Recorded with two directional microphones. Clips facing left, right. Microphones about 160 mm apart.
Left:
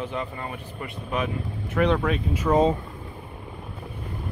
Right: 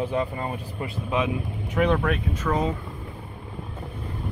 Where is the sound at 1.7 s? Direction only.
10° right (ahead or behind).